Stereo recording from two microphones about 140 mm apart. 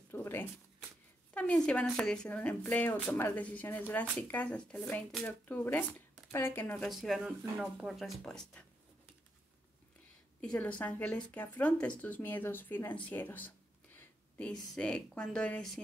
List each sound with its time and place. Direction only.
0.1 s shuffling cards: 15° left (ahead or behind)
1.3 s speech: 10° left (ahead or behind)
6.9 s speech: centre (ahead or behind)
10.4 s a woman's voice: 10° left (ahead or behind)